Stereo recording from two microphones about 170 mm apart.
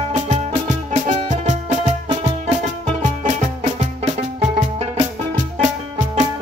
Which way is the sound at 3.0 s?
45° right (ahead or behind).